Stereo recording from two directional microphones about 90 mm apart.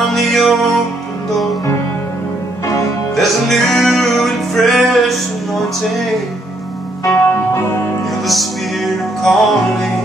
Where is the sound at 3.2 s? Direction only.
Centre (ahead or behind).